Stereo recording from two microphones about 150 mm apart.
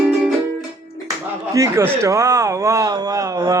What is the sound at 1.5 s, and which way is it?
A man's voice, 20° right (ahead or behind).